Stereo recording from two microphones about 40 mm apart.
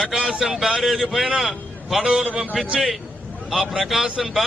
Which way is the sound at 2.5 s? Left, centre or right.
Centre.